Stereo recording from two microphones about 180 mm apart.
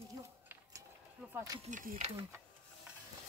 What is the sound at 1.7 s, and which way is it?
Speech, 50° right (ahead or behind).